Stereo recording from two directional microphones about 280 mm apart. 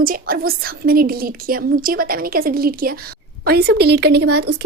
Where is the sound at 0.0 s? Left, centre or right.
Right.